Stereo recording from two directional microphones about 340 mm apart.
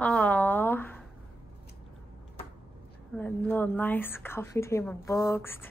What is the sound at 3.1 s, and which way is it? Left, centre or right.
A woman's voice, centre.